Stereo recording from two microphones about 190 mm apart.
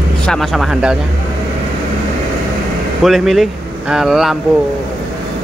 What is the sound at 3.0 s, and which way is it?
Speech, centre (ahead or behind).